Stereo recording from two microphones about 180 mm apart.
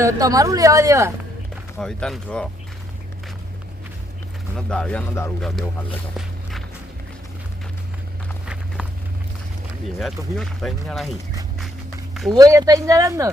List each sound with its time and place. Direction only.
0.0 s speech: 20° right (ahead or behind)
1.8 s speech: 5° left (ahead or behind)
4.5 s speech: 5° left (ahead or behind)
10.0 s speech: centre (ahead or behind)
12.1 s a sound: centre (ahead or behind)
12.4 s speech: 20° right (ahead or behind)